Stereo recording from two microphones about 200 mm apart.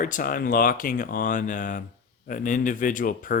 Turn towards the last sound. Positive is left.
turn(degrees=45)  # may be behind; listen again after turning